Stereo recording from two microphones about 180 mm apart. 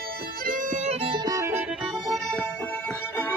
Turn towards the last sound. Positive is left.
turn(degrees=10)  # may be behind; listen again after turning